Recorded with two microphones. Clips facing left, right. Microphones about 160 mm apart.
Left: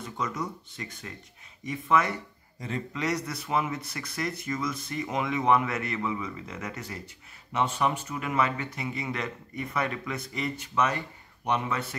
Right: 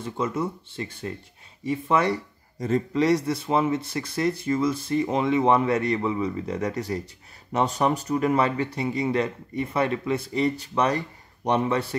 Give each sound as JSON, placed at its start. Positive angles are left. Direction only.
{"t": 0.0, "sound": "a man's voice", "side_deg": -30}